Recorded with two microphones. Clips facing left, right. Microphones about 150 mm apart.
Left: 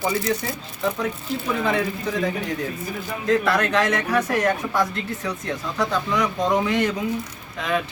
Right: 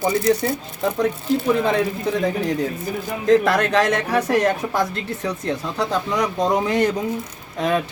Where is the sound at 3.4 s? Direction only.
35° right (ahead or behind).